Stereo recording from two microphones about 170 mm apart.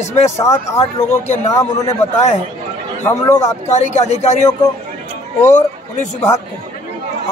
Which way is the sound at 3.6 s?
40° left (ahead or behind).